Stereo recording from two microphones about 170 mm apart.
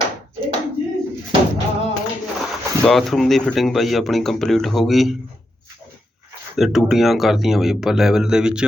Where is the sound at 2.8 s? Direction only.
Centre (ahead or behind).